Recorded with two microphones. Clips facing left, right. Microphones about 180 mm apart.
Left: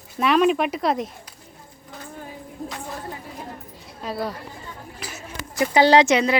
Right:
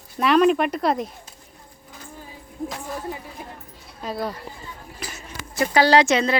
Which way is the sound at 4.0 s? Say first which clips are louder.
Even; centre (ahead or behind).